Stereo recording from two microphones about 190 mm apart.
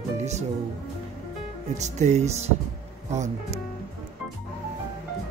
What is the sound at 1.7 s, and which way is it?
Speech, 40° right (ahead or behind).